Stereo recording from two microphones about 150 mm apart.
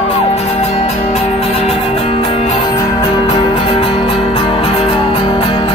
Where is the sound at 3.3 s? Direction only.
45° left (ahead or behind).